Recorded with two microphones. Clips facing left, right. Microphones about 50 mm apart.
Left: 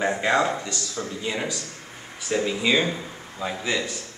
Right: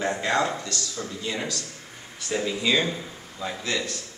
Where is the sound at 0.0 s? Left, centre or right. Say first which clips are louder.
Left 3 dB; centre.